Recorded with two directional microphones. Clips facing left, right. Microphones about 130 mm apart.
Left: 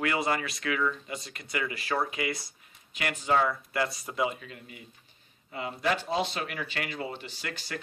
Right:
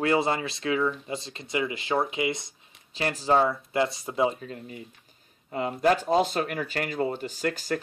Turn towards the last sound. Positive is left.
turn(degrees=-40)  # may be behind; listen again after turning